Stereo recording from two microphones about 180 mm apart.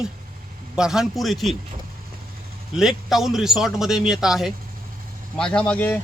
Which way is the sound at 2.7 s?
Centre (ahead or behind).